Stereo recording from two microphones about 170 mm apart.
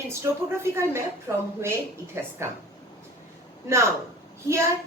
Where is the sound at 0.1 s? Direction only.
15° right (ahead or behind).